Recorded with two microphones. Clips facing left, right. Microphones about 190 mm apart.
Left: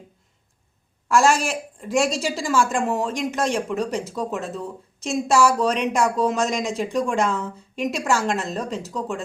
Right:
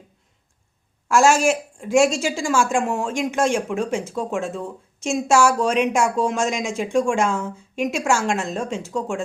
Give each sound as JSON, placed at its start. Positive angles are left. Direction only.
{"t": 1.0, "sound": "a woman's voice", "side_deg": 0}